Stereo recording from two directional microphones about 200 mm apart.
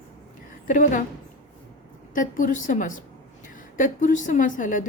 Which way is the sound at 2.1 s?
40° left (ahead or behind).